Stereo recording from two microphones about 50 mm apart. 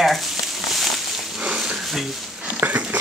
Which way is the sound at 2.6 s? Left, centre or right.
Right.